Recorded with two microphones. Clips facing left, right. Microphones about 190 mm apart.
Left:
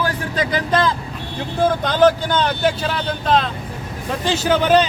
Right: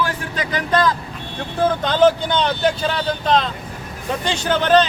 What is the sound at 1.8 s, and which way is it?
Speech, 5° left (ahead or behind).